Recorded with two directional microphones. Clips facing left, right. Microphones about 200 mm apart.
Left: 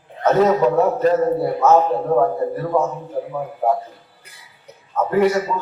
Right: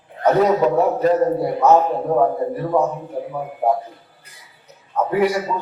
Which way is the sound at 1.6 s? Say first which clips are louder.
Even; 15° right (ahead or behind).